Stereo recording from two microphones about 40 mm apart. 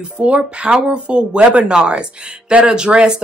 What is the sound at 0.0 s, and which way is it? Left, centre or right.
Speech, right.